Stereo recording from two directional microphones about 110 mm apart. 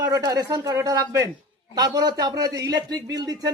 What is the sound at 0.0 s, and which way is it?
A man's voice, 35° right (ahead or behind).